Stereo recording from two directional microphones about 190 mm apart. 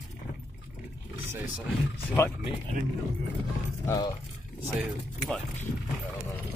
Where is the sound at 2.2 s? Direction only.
15° left (ahead or behind).